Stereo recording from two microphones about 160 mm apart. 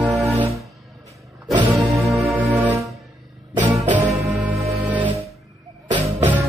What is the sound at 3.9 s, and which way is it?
Music, 10° right (ahead or behind).